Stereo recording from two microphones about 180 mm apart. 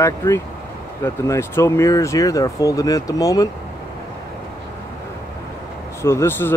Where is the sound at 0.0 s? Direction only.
15° left (ahead or behind).